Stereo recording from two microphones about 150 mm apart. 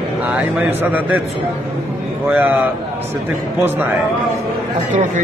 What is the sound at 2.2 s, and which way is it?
Speech, 10° right (ahead or behind).